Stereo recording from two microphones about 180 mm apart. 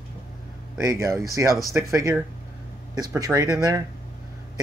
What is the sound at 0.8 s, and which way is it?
Speech, 15° right (ahead or behind).